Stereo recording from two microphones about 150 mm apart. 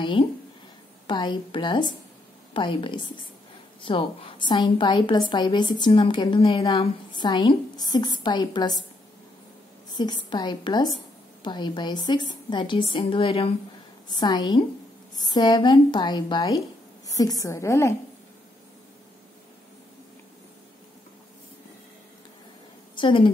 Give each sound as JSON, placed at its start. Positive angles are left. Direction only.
{"t": 1.0, "sound": "a woman's voice", "side_deg": 30}
{"t": 9.8, "sound": "a woman's voice", "side_deg": 30}
{"t": 22.9, "sound": "a woman's voice", "side_deg": 35}